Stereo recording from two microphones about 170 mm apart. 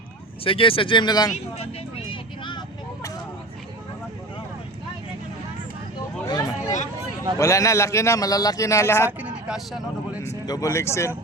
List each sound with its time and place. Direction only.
0.4 s speech: 30° left (ahead or behind)
2.4 s vehicle: 25° left (ahead or behind)
6.2 s vehicle: 20° left (ahead or behind)
7.3 s a man's voice: 20° left (ahead or behind)
9.0 s speech: 5° right (ahead or behind)
10.2 s speech: 20° left (ahead or behind)